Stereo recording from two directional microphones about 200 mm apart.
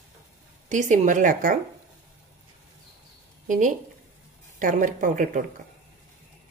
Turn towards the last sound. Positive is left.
turn(degrees=-40)  # may be behind; listen again after turning